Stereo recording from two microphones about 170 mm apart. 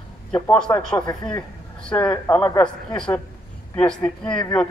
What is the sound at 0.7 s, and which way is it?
A man's voice, 20° left (ahead or behind).